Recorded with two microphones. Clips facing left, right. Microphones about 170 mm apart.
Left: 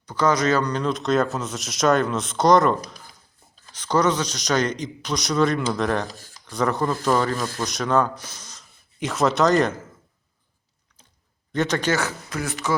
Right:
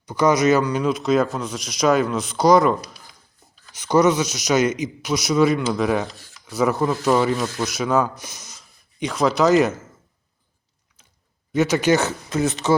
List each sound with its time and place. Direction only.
0.0 s a man's voice: 10° right (ahead or behind)
9.0 s speech: centre (ahead or behind)
11.5 s a man's voice: 5° right (ahead or behind)
11.9 s speech: 25° right (ahead or behind)